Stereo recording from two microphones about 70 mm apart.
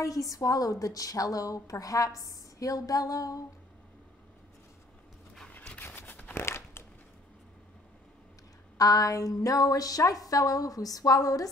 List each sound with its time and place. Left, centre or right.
0.0 s a woman's voice: left
5.8 s a sound: left
8.7 s a woman's voice: left